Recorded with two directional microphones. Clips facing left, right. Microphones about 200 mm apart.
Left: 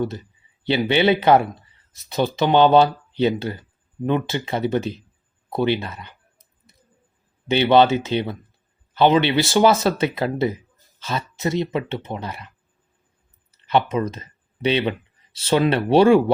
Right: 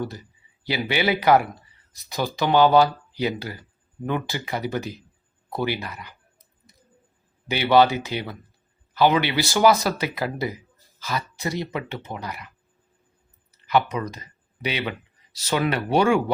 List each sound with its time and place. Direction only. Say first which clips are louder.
0.0 s speech: left 5 dB; 25° left (ahead or behind)
7.4 s speech: left 3 dB; 25° left (ahead or behind)
13.5 s a sound: left 2 dB; 25° left (ahead or behind)
13.9 s speech: left 6 dB; 25° left (ahead or behind)